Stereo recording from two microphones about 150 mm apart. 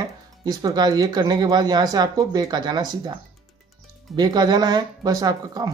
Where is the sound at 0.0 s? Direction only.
25° right (ahead or behind).